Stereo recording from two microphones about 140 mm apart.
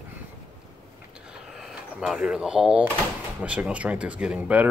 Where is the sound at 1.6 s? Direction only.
5° right (ahead or behind).